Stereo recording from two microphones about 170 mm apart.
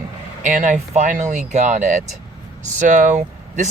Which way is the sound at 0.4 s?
50° right (ahead or behind).